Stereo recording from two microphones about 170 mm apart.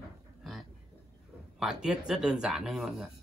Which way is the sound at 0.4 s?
Centre (ahead or behind).